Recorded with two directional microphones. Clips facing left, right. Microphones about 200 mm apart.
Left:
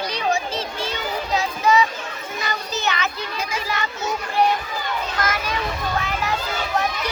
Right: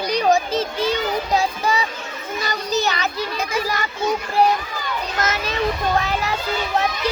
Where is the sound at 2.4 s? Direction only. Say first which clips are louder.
Right 4 dB; 35° right (ahead or behind).